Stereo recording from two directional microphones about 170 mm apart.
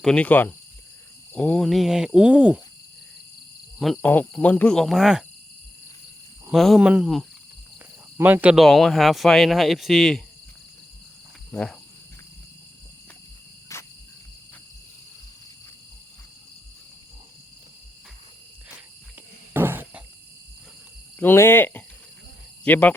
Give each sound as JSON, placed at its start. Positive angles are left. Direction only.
{"t": 0.0, "sound": "cricket", "side_deg": 5}
{"t": 1.3, "sound": "speech", "side_deg": 5}
{"t": 3.8, "sound": "speech", "side_deg": 0}
{"t": 6.5, "sound": "speech", "side_deg": 0}
{"t": 8.6, "sound": "speech", "side_deg": 0}
{"t": 11.5, "sound": "speech", "side_deg": 5}
{"t": 13.7, "sound": "cricket", "side_deg": 15}
{"t": 19.5, "sound": "a sound", "side_deg": -10}
{"t": 21.2, "sound": "cricket", "side_deg": 15}